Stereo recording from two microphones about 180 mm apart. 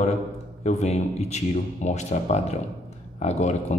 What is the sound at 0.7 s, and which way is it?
Speech, 35° left (ahead or behind).